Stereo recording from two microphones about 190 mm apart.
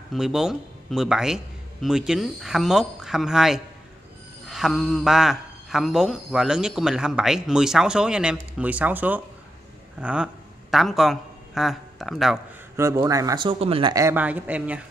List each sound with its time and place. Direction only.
0.1 s a man's voice: centre (ahead or behind)
12.7 s speech: 15° right (ahead or behind)
13.9 s speech: 10° right (ahead or behind)